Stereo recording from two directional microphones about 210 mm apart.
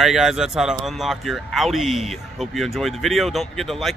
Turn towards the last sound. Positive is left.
turn(degrees=0)  # may be behind; listen again after turning